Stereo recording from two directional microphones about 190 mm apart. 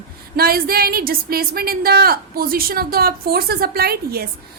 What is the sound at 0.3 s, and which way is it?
A woman's voice, 50° right (ahead or behind).